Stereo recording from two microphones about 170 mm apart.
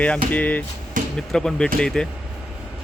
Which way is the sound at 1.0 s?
50° right (ahead or behind).